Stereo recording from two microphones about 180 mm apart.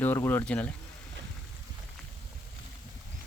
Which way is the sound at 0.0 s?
10° left (ahead or behind).